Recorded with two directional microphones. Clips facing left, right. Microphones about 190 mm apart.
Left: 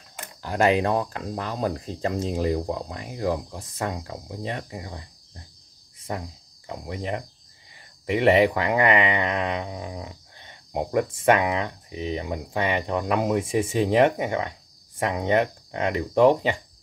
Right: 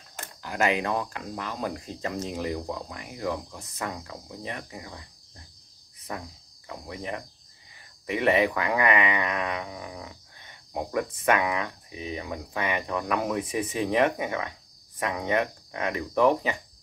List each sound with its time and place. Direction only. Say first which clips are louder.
0.4 s speech: left 5 dB; 35° left (ahead or behind)
6.1 s speech: left 4 dB; 30° left (ahead or behind)